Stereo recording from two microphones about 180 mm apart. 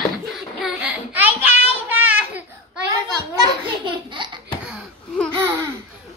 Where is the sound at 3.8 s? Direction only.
25° right (ahead or behind).